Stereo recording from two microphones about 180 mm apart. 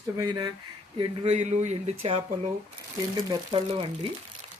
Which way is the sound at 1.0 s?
40° right (ahead or behind).